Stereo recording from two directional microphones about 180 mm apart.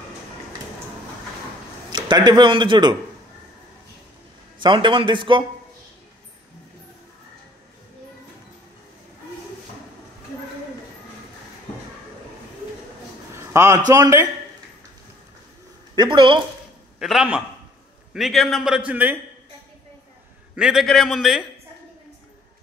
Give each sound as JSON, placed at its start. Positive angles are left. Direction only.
{"t": 1.9, "sound": "a man's voice", "side_deg": -25}
{"t": 4.6, "sound": "a man's voice", "side_deg": -25}
{"t": 13.4, "sound": "a man's voice", "side_deg": -15}
{"t": 16.0, "sound": "a man's voice", "side_deg": -25}
{"t": 17.0, "sound": "a man's voice", "side_deg": -5}
{"t": 20.5, "sound": "a man's voice", "side_deg": 0}